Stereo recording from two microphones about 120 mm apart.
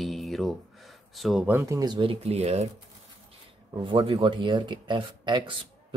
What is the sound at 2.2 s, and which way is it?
Speech, 60° right (ahead or behind).